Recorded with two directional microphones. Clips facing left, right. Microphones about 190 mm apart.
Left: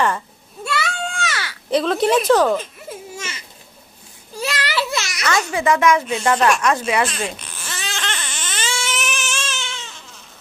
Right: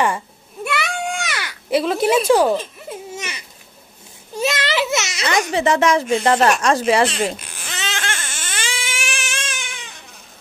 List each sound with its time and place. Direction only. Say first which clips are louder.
0.7 s a sound: right 1 dB; 15° right (ahead or behind)
1.7 s a woman's voice: even; 5° right (ahead or behind)
3.2 s babbling: right 1 dB; 15° right (ahead or behind)
4.4 s a sound: right 3 dB; 20° right (ahead or behind)
5.5 s speech: even; 25° right (ahead or behind)
7.3 s baby cry: right 1 dB; 15° right (ahead or behind)
8.1 s baby cry: even; 45° right (ahead or behind)
8.5 s frog: left 3 dB; 10° right (ahead or behind)
9.3 s a sound: left 2 dB; 55° right (ahead or behind)
9.6 s cat: left 3 dB; 15° right (ahead or behind)